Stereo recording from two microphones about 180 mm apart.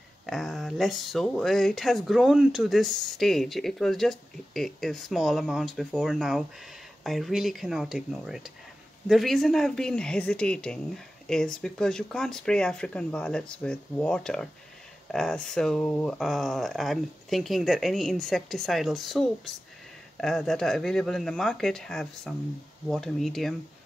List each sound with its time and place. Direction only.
0.3 s speech: centre (ahead or behind)